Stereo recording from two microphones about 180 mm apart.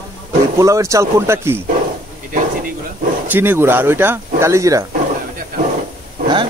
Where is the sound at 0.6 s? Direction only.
15° right (ahead or behind).